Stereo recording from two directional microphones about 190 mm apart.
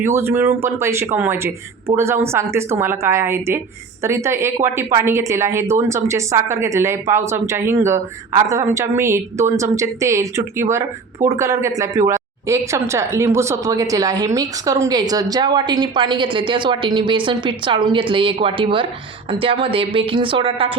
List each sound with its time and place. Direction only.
0.0 s a woman's voice: 10° right (ahead or behind); by 20.7 s 25° right (ahead or behind)